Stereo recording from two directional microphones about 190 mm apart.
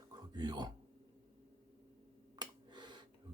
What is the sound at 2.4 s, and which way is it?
Finger snapping, 25° right (ahead or behind).